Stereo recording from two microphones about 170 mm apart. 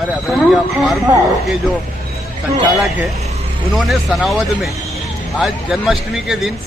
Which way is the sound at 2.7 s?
Centre (ahead or behind).